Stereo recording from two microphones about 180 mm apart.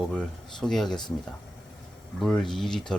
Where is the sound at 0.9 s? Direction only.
25° left (ahead or behind).